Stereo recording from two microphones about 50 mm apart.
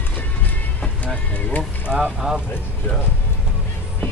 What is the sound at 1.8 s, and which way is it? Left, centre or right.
Speech, centre.